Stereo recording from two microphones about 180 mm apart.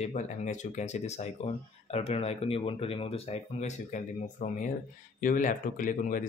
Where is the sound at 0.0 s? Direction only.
40° left (ahead or behind).